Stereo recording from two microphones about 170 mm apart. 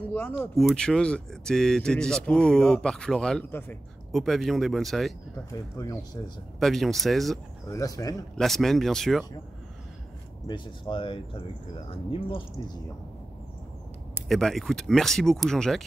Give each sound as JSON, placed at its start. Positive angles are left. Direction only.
{"t": 0.0, "sound": "speech", "side_deg": 10}
{"t": 5.8, "sound": "speech", "side_deg": 20}
{"t": 6.6, "sound": "speech", "side_deg": 0}
{"t": 7.7, "sound": "speech", "side_deg": 20}
{"t": 8.4, "sound": "speech", "side_deg": 0}
{"t": 10.4, "sound": "speech", "side_deg": 30}
{"t": 14.2, "sound": "speech", "side_deg": 0}